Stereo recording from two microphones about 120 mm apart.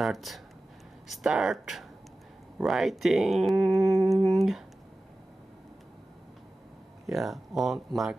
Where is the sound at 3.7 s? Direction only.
25° right (ahead or behind).